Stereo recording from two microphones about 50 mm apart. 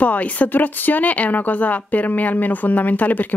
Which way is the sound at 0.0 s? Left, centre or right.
Left.